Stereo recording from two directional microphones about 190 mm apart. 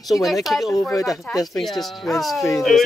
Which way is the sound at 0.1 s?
Centre (ahead or behind).